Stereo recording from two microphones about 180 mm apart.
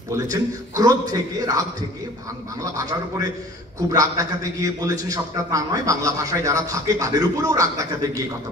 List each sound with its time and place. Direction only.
0.1 s a man's voice: 20° right (ahead or behind)